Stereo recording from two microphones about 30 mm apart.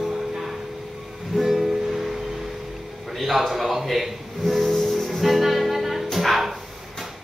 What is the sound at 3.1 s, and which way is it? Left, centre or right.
Speech, centre.